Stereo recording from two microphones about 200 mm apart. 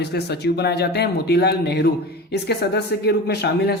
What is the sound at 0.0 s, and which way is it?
Speech, 55° left (ahead or behind).